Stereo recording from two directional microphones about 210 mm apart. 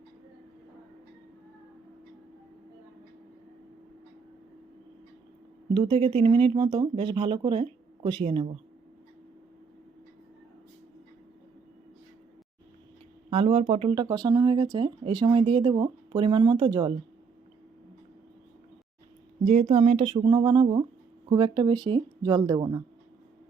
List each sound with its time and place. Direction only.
5.7 s speech: 25° right (ahead or behind)
13.3 s speech: 30° right (ahead or behind)
19.5 s speech: 30° right (ahead or behind)